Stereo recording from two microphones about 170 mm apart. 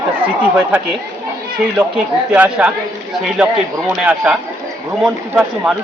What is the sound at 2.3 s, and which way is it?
A man's voice, 10° right (ahead or behind).